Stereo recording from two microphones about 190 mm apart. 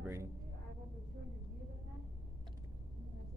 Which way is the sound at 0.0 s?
15° right (ahead or behind).